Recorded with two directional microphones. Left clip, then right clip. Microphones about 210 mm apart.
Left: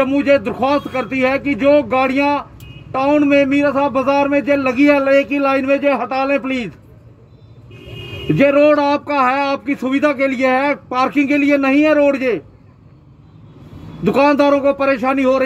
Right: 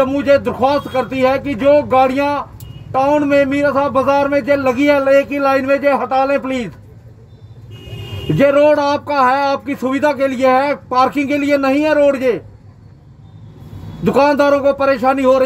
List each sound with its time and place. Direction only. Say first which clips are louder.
0.0 s speech: right 1 dB; 15° right (ahead or behind)
8.4 s speech: right 1 dB; 15° right (ahead or behind)
14.0 s speech: right 1 dB; 15° right (ahead or behind)